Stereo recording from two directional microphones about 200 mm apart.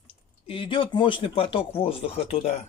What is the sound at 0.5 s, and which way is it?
Speech, 25° left (ahead or behind).